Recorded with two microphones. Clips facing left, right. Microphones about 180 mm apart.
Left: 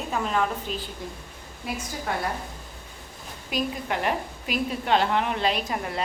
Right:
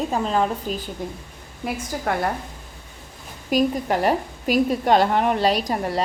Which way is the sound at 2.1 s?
60° right (ahead or behind).